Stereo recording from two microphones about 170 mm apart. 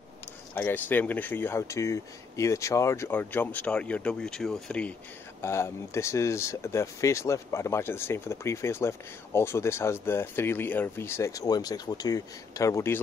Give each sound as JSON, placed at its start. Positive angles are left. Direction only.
{"t": 0.6, "sound": "speech", "side_deg": 10}